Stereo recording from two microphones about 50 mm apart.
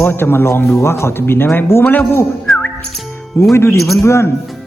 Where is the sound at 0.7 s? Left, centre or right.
Left.